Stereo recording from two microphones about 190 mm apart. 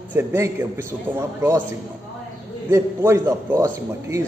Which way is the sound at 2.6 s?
15° right (ahead or behind).